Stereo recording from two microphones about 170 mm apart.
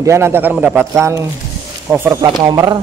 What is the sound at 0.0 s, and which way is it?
A man's voice, 15° right (ahead or behind).